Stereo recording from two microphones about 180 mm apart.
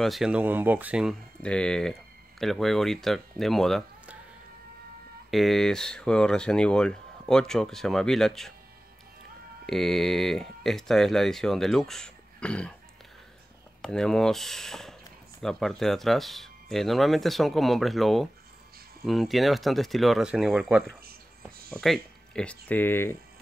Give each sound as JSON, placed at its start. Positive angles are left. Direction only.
{"t": 0.0, "sound": "speech", "side_deg": 0}
{"t": 1.4, "sound": "speech", "side_deg": 5}
{"t": 5.3, "sound": "speech", "side_deg": 0}
{"t": 9.7, "sound": "speech", "side_deg": 0}
{"t": 13.8, "sound": "speech", "side_deg": 5}
{"t": 21.8, "sound": "speech", "side_deg": 5}